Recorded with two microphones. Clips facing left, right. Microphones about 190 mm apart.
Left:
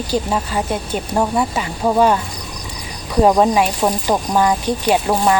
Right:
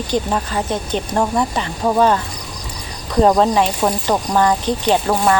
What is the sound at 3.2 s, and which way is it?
A woman's voice, 10° left (ahead or behind).